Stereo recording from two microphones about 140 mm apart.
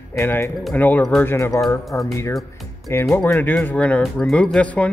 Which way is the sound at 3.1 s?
5° left (ahead or behind).